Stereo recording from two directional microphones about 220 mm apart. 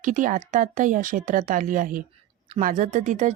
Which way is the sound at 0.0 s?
35° right (ahead or behind).